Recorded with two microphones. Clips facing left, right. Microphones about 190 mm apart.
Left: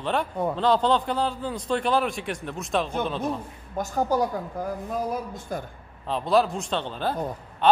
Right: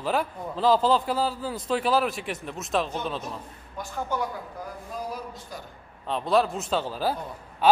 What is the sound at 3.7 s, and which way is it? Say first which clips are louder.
Speech: left 7 dB; 40° left (ahead or behind).